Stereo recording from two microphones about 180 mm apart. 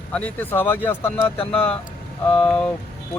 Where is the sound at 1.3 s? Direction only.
30° left (ahead or behind).